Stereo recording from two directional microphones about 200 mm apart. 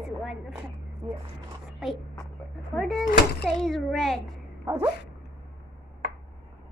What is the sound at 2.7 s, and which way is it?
A child's voice, centre (ahead or behind).